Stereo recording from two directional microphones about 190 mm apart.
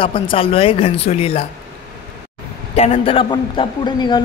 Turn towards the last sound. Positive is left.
turn(degrees=25)  # may be behind; listen again after turning